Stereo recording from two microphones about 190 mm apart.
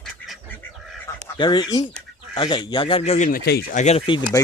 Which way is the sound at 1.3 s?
25° left (ahead or behind).